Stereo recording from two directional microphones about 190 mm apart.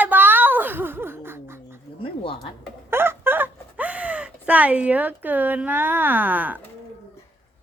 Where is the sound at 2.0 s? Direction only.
25° left (ahead or behind).